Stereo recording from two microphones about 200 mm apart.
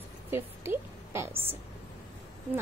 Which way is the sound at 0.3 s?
10° right (ahead or behind).